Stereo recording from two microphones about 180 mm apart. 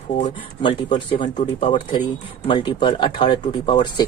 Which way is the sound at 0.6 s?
25° left (ahead or behind).